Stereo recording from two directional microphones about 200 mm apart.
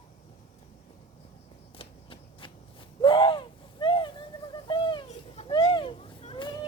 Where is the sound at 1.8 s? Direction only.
25° left (ahead or behind).